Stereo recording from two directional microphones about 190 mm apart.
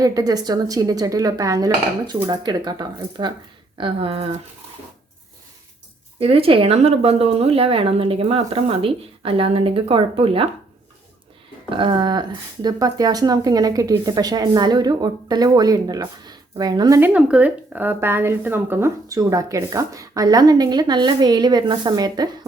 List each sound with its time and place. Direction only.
0.0 s speech: 20° right (ahead or behind)
6.1 s speech: 30° right (ahead or behind)
11.7 s speech: 25° right (ahead or behind)
17.0 s a woman's voice: 5° right (ahead or behind)